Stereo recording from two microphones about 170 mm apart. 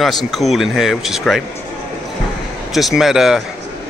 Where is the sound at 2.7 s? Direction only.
Centre (ahead or behind).